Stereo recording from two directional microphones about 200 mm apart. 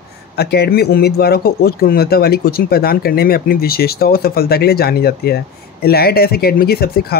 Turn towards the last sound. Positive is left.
turn(degrees=50)  # may be behind; listen again after turning